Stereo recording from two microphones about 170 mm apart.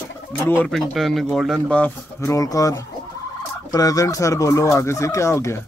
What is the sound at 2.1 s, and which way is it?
Speech, 20° left (ahead or behind).